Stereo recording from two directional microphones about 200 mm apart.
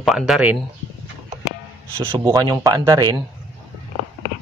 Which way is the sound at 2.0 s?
20° right (ahead or behind).